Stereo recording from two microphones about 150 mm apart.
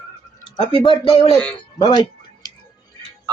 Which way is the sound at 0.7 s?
35° left (ahead or behind).